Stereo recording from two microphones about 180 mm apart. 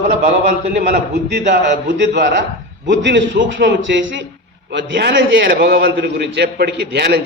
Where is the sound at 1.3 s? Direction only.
70° right (ahead or behind).